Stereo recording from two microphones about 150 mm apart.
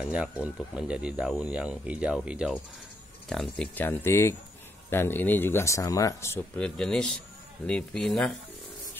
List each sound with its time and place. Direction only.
0.1 s speech: 5° right (ahead or behind)